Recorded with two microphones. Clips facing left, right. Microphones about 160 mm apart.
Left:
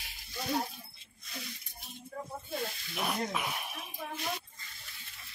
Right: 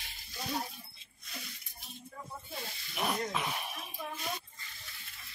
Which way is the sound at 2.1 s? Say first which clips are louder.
Left 7 dB; 40° left (ahead or behind).